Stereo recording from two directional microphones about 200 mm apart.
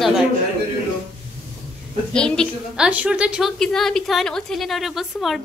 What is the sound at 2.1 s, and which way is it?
A woman's voice, 5° left (ahead or behind).